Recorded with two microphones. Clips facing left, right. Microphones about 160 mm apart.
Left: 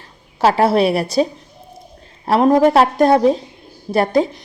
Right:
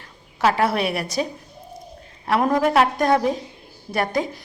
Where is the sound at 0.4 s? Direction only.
30° left (ahead or behind).